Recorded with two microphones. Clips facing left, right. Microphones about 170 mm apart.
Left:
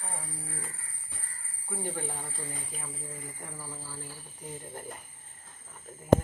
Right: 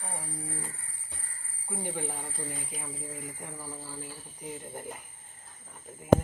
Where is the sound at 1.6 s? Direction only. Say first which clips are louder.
Right 1 dB; 15° right (ahead or behind).